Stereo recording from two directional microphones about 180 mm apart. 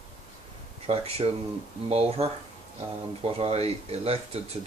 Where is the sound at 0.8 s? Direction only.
35° right (ahead or behind).